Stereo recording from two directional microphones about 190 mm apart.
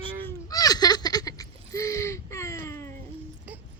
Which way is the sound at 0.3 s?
20° left (ahead or behind).